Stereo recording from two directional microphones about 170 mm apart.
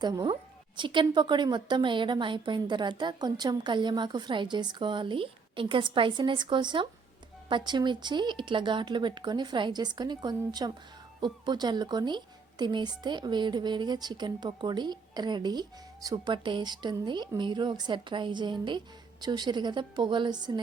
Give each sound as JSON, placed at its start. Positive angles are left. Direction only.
{"t": 0.0, "sound": "a woman's voice", "side_deg": -25}